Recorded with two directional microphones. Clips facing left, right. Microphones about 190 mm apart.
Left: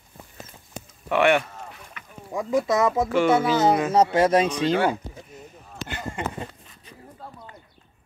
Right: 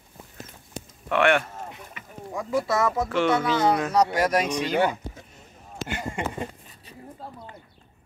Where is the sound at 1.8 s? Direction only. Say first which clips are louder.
Right 2 dB; 5° right (ahead or behind).